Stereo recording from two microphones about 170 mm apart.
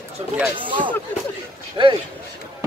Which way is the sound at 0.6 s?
30° right (ahead or behind).